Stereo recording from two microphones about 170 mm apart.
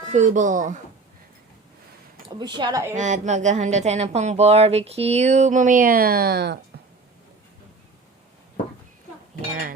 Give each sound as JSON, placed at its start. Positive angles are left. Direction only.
{"t": 0.0, "sound": "speech", "side_deg": -45}
{"t": 2.4, "sound": "speech", "side_deg": -25}
{"t": 2.9, "sound": "speech", "side_deg": -45}